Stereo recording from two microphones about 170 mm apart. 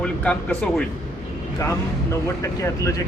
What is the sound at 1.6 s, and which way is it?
Speech, 20° left (ahead or behind).